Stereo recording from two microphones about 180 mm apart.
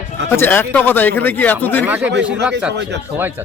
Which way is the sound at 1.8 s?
5° right (ahead or behind).